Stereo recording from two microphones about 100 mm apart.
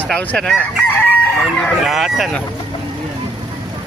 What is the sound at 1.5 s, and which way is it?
Speech, 5° left (ahead or behind).